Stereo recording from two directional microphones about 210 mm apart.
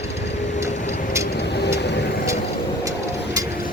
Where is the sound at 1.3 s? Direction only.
50° left (ahead or behind).